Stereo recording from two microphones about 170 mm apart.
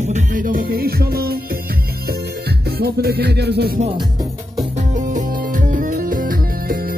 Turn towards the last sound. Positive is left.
turn(degrees=-60)  # may be behind; listen again after turning